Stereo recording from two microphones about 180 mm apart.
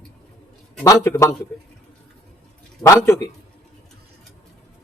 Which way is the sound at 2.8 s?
15° left (ahead or behind).